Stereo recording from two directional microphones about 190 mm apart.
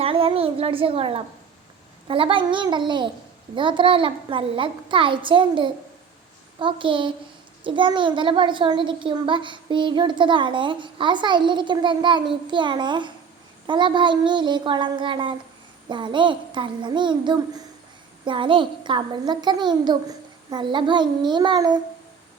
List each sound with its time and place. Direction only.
0.0 s a child's voice: 30° right (ahead or behind)